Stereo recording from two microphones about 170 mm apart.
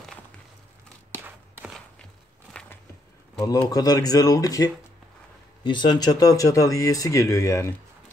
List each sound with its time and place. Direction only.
1.1 s walk: 10° right (ahead or behind)
2.6 s a sound: 5° left (ahead or behind)
3.3 s speech: 20° left (ahead or behind)